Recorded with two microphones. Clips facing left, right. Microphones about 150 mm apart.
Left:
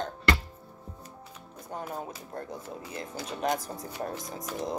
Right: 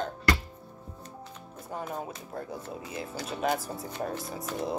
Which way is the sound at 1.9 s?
5° right (ahead or behind).